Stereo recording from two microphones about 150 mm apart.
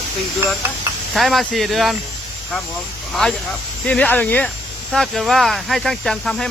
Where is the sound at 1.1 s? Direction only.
Centre (ahead or behind).